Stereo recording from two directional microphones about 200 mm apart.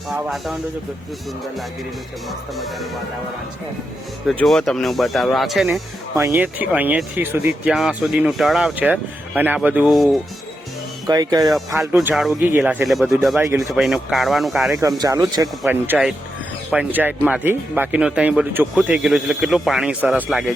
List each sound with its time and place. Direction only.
0.1 s speech: centre (ahead or behind)
4.3 s speech: centre (ahead or behind)
6.1 s speech: 10° right (ahead or behind)
11.0 s speech: 20° right (ahead or behind)
11.8 s speech: 5° right (ahead or behind)
13.4 s speech: 15° right (ahead or behind)
13.7 s speech: centre (ahead or behind)
14.8 s speech: 15° right (ahead or behind)
15.6 s speech: 5° right (ahead or behind)